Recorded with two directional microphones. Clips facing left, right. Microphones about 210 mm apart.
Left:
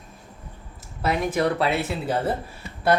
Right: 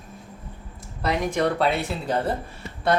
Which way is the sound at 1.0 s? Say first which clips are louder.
Even; 5° left (ahead or behind).